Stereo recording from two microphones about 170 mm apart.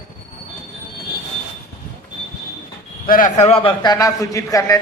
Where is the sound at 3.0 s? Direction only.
55° left (ahead or behind).